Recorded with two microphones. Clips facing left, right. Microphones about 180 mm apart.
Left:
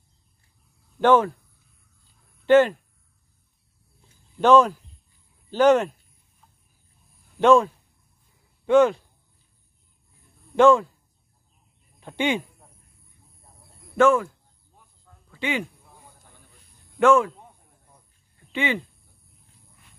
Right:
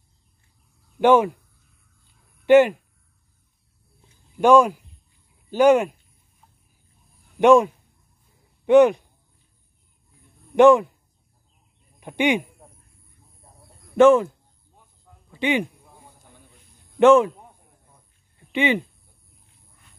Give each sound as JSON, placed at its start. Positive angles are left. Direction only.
{"t": 0.9, "sound": "speech", "side_deg": -15}
{"t": 2.4, "sound": "speech", "side_deg": -15}
{"t": 4.4, "sound": "speech", "side_deg": -10}
{"t": 7.3, "sound": "speech", "side_deg": -15}
{"t": 10.5, "sound": "speech", "side_deg": -20}
{"t": 12.0, "sound": "speech", "side_deg": -15}
{"t": 13.9, "sound": "speech", "side_deg": -20}
{"t": 15.3, "sound": "speech", "side_deg": -20}
{"t": 17.0, "sound": "speech", "side_deg": -20}
{"t": 18.5, "sound": "speech", "side_deg": -20}